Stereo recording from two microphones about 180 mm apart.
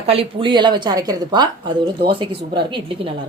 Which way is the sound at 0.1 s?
30° right (ahead or behind).